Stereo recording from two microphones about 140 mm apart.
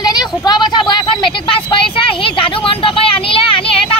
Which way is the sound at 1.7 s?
40° left (ahead or behind).